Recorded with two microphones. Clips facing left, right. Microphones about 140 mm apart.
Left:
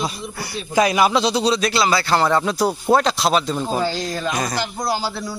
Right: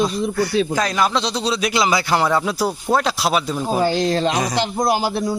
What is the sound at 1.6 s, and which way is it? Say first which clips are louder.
Speech: even; 15° right (ahead or behind).